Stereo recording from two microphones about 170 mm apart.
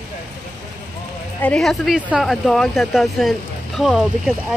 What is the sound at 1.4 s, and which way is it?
Speech, 5° left (ahead or behind).